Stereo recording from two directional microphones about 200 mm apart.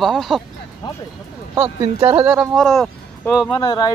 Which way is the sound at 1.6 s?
20° right (ahead or behind).